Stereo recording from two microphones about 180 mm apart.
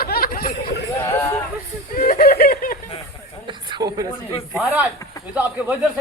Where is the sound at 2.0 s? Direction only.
50° left (ahead or behind).